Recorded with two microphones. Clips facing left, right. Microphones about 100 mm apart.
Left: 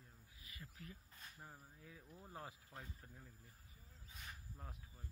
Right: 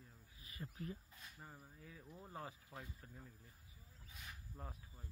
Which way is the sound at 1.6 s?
Centre (ahead or behind).